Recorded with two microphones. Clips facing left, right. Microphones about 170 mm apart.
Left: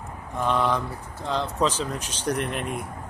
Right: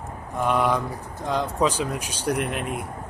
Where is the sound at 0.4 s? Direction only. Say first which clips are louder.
Right 2 dB; 10° right (ahead or behind).